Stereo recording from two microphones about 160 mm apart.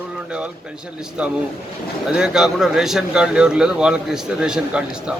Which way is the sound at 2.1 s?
5° right (ahead or behind).